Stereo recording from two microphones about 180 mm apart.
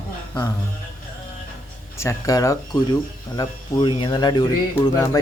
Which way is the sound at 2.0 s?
15° left (ahead or behind).